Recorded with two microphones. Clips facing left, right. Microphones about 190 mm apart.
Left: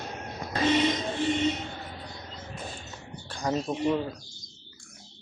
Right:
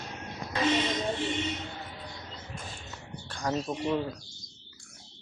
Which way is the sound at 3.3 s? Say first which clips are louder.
Left 2 dB; 10° left (ahead or behind).